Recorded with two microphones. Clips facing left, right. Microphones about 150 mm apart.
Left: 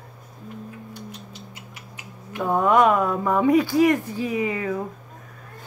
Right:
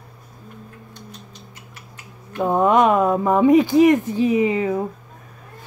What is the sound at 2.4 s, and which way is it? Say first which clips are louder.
Speech: right 2 dB; 20° right (ahead or behind).